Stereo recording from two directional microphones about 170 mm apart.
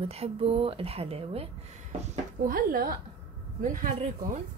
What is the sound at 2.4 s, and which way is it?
Speech, 55° right (ahead or behind).